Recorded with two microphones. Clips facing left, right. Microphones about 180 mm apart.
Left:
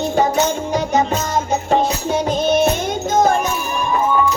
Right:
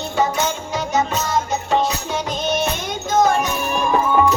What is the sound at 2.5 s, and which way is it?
Music, 50° left (ahead or behind).